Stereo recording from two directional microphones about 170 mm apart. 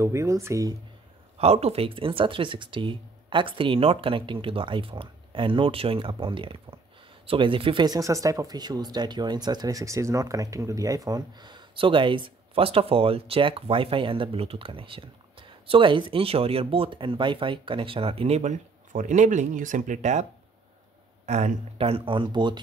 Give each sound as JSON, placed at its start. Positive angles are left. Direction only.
{"t": 0.0, "sound": "speech", "side_deg": -15}
{"t": 1.4, "sound": "speech", "side_deg": -35}
{"t": 21.3, "sound": "speech", "side_deg": -40}